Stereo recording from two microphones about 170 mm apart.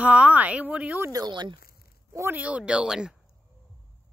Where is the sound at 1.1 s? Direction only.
25° right (ahead or behind).